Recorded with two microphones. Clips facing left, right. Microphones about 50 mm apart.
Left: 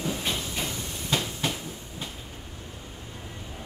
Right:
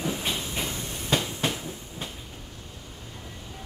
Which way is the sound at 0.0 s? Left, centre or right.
Centre.